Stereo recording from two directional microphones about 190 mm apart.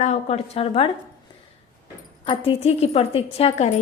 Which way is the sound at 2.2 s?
30° left (ahead or behind).